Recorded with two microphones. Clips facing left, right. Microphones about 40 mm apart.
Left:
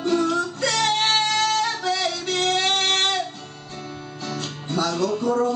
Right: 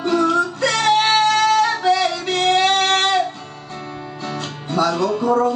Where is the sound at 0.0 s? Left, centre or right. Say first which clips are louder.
Right 4 dB; centre.